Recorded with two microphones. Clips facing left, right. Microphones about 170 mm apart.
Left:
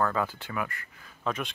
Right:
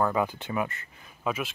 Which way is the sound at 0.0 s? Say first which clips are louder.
Right 2 dB; 15° right (ahead or behind).